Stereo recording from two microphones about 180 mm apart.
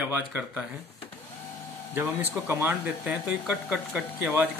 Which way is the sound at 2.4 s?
10° right (ahead or behind).